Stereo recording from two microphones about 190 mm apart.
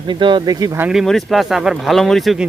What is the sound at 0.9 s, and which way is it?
Speech, centre (ahead or behind).